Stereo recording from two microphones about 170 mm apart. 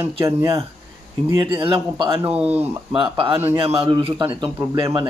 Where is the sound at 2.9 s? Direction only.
30° right (ahead or behind).